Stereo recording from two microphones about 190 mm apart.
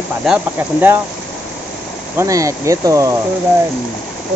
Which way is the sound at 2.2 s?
15° right (ahead or behind).